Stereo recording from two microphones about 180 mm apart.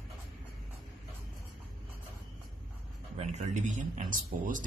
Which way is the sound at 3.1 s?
40° right (ahead or behind).